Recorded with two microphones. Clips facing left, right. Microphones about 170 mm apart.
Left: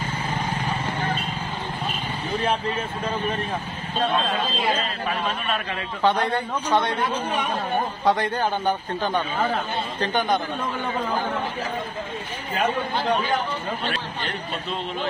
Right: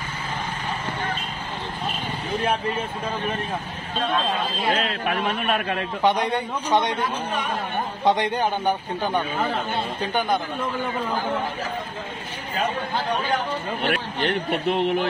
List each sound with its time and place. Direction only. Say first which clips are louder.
4.7 s a man's voice: right 2 dB; 70° right (ahead or behind)
6.0 s a man's voice: even; 15° right (ahead or behind)
8.0 s a man's voice: right 3 dB; 20° right (ahead or behind)
13.8 s a man's voice: right 5 dB; 65° right (ahead or behind)